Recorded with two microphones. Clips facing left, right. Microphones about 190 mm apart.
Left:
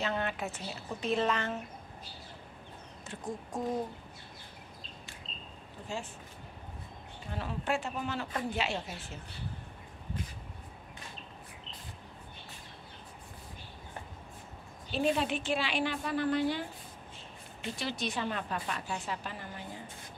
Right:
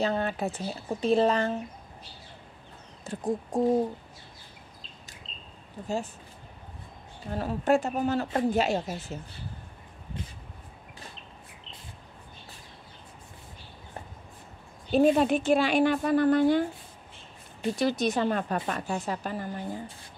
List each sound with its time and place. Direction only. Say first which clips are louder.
0.0 s speech: right 6 dB; 35° right (ahead or behind)
3.0 s a woman's voice: right 10 dB; 35° right (ahead or behind)
7.2 s a woman's voice: right 9 dB; 40° right (ahead or behind)
14.9 s a woman's voice: right 9 dB; 45° right (ahead or behind)